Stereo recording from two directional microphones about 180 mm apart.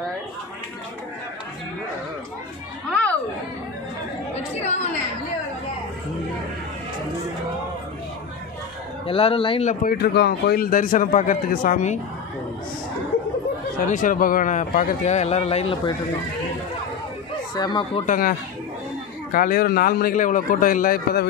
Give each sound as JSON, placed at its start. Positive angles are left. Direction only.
{"t": 2.9, "sound": "a sound", "side_deg": 10}
{"t": 4.4, "sound": "a woman's voice", "side_deg": 40}
{"t": 9.0, "sound": "speech", "side_deg": 30}
{"t": 9.7, "sound": "a man's voice", "side_deg": 60}
{"t": 13.7, "sound": "a man's voice", "side_deg": 45}
{"t": 17.6, "sound": "speech", "side_deg": 25}
{"t": 18.0, "sound": "a man's voice", "side_deg": 50}
{"t": 19.3, "sound": "a man's voice", "side_deg": 50}